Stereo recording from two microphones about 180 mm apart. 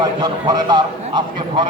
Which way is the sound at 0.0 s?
25° right (ahead or behind).